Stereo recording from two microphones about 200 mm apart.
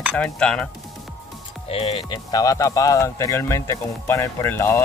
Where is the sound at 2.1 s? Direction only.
20° left (ahead or behind).